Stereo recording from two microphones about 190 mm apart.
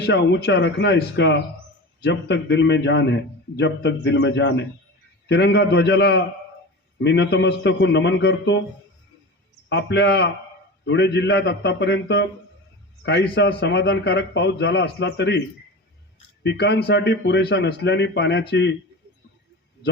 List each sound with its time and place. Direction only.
0.0 s a man's voice: 65° left (ahead or behind)
9.6 s a man's voice: 65° left (ahead or behind)
16.4 s a man's voice: 65° left (ahead or behind)